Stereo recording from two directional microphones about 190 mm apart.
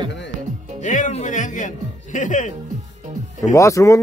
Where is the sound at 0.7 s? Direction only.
40° left (ahead or behind).